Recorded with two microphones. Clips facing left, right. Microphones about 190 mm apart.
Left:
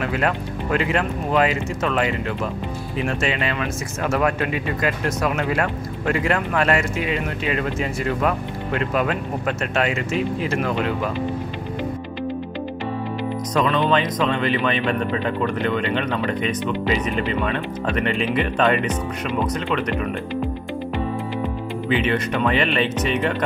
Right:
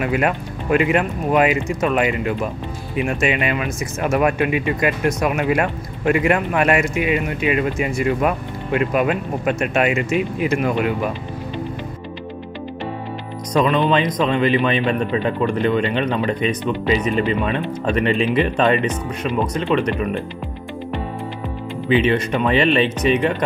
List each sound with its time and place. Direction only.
0.0 s speech: 15° right (ahead or behind)
13.5 s speech: 20° right (ahead or behind)
21.8 s speech: 20° right (ahead or behind)